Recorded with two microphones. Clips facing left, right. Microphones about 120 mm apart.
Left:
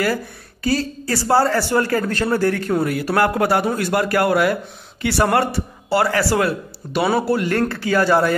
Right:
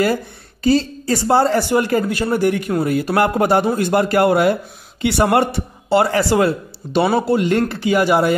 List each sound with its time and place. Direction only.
0.7 s a man's voice: 25° right (ahead or behind)